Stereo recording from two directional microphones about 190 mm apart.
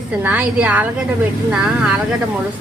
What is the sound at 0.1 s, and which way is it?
A woman's voice, 10° right (ahead or behind).